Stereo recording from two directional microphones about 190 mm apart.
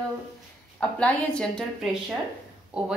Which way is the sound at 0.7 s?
5° left (ahead or behind).